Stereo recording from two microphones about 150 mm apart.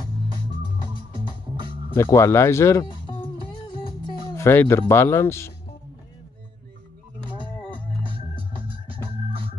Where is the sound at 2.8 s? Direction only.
35° left (ahead or behind).